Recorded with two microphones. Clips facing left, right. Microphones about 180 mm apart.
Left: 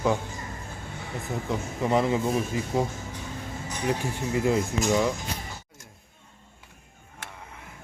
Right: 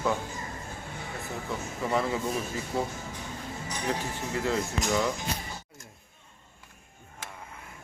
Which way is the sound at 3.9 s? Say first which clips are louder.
Left 5 dB; 15° left (ahead or behind).